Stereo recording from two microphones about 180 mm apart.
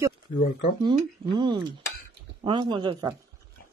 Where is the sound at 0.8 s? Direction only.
25° right (ahead or behind).